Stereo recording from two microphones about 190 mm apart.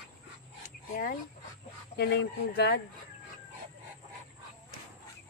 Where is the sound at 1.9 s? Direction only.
55° left (ahead or behind).